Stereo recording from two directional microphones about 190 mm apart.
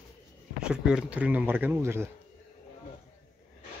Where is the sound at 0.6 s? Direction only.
5° right (ahead or behind).